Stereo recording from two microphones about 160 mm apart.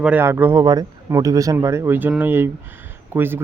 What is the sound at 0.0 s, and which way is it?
Speech, 10° right (ahead or behind).